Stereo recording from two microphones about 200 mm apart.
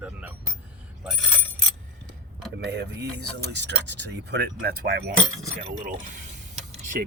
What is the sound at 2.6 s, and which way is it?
Speech, 60° right (ahead or behind).